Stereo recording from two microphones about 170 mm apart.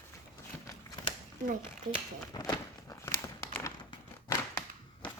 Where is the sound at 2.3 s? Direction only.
20° left (ahead or behind).